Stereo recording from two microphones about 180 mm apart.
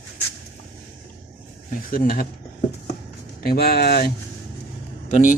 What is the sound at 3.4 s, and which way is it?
Speech, 55° left (ahead or behind).